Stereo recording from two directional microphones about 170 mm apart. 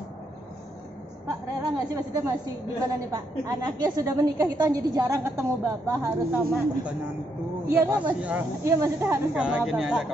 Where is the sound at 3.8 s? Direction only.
25° right (ahead or behind).